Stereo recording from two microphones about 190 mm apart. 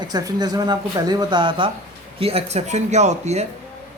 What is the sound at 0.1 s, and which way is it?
A man's voice, 20° right (ahead or behind).